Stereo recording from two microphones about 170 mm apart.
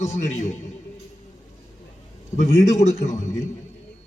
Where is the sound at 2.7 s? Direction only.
40° left (ahead or behind).